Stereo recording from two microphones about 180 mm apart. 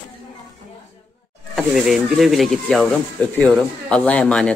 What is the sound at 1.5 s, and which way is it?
Speech, centre (ahead or behind).